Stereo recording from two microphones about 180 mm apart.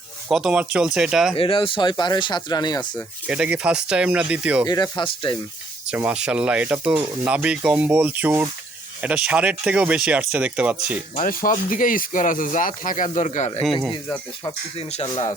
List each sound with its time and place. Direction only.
0.3 s speech: 5° right (ahead or behind)
1.4 s speech: 30° left (ahead or behind)
3.2 s speech: 5° right (ahead or behind)
4.6 s speech: 25° left (ahead or behind)
5.9 s speech: 5° right (ahead or behind)
11.1 s speech: 45° left (ahead or behind)
14.8 s speech: 35° left (ahead or behind)
15.0 s speech: 20° left (ahead or behind)